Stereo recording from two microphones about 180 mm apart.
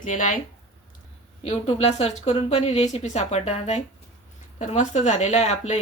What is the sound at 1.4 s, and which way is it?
A woman's voice, 35° left (ahead or behind).